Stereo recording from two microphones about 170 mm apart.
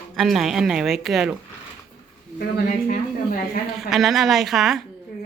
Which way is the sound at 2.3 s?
55° left (ahead or behind).